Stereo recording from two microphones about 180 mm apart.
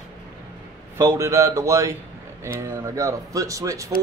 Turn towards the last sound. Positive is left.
turn(degrees=-15)  # may be behind; listen again after turning